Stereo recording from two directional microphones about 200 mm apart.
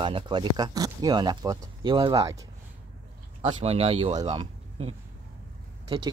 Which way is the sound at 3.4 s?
30° right (ahead or behind).